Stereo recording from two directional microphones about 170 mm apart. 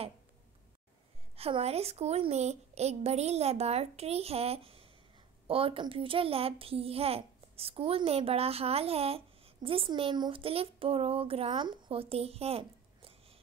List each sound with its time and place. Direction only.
1.3 s a child's voice: 35° right (ahead or behind)